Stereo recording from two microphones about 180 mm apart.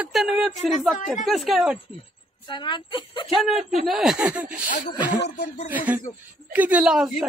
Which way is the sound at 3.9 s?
Centre (ahead or behind).